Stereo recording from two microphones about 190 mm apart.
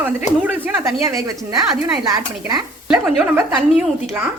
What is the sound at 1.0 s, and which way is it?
Speech, 15° right (ahead or behind).